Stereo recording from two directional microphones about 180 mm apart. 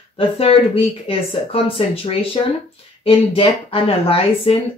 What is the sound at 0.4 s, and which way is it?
Speech, 30° left (ahead or behind).